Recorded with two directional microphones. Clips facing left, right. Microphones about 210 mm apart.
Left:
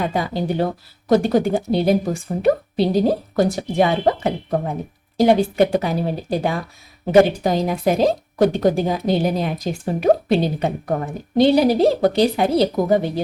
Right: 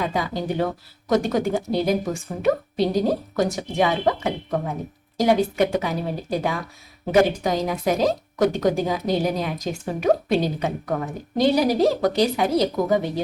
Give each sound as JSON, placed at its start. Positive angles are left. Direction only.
{"t": 0.1, "sound": "a woman's voice", "side_deg": 30}